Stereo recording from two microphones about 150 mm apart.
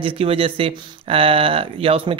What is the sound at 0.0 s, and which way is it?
Speech, 40° right (ahead or behind).